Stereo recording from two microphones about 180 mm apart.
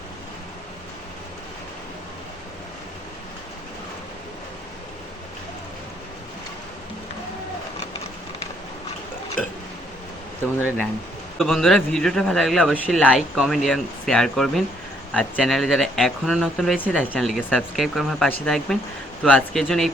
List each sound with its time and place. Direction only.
10.6 s speech: 10° right (ahead or behind)
11.3 s speech: centre (ahead or behind)